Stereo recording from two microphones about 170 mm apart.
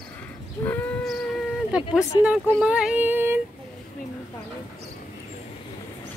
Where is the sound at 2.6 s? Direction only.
5° right (ahead or behind).